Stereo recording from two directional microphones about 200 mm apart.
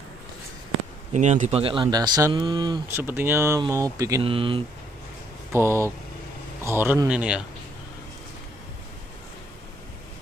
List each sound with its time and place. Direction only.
1.1 s speech: 35° right (ahead or behind)
3.0 s speech: 10° right (ahead or behind)
4.2 s speech: 25° right (ahead or behind)
5.5 s speech: 15° right (ahead or behind)